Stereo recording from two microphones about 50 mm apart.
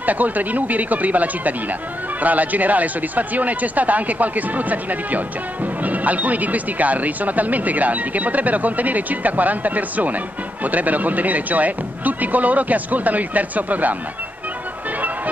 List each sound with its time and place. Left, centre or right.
0.0 s speech: right